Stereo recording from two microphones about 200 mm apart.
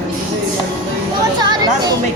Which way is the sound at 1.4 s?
20° right (ahead or behind).